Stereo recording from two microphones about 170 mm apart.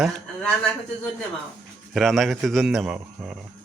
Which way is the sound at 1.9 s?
Centre (ahead or behind).